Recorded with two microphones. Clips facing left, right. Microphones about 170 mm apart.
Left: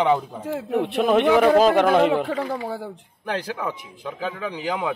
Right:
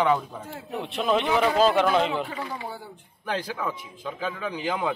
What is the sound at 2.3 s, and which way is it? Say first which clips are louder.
Speech: left 8 dB; 90° left.